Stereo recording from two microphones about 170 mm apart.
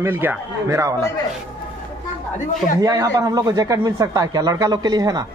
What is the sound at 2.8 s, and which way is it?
Speech, 20° right (ahead or behind).